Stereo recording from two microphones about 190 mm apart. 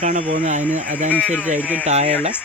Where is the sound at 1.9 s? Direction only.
35° right (ahead or behind).